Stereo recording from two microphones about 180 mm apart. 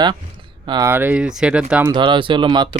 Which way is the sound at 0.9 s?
10° right (ahead or behind).